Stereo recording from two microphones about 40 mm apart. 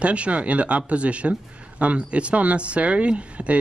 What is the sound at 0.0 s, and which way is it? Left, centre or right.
Speech, right.